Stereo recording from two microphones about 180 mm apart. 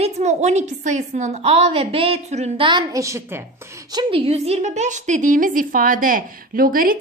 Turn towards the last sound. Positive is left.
turn(degrees=-50)  # may be behind; listen again after turning